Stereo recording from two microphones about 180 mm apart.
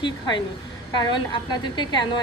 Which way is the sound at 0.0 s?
25° left (ahead or behind).